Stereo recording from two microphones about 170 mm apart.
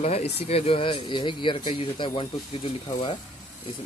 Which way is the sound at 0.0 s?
35° left (ahead or behind).